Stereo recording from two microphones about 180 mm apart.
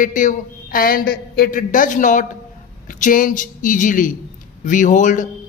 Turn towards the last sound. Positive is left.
turn(degrees=45)  # may be behind; listen again after turning